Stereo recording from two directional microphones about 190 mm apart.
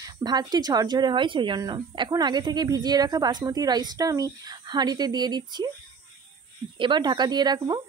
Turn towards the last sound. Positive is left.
turn(degrees=-20)  # may be behind; listen again after turning